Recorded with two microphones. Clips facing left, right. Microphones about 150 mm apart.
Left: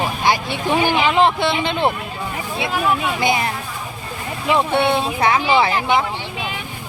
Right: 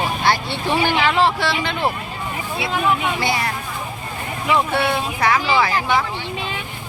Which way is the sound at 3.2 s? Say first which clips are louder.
Left 3 dB; 20° left (ahead or behind).